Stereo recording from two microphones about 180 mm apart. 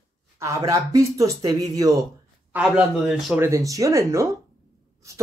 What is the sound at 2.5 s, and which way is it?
Speech, 5° right (ahead or behind).